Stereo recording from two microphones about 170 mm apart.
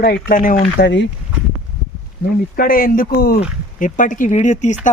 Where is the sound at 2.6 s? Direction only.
60° left (ahead or behind).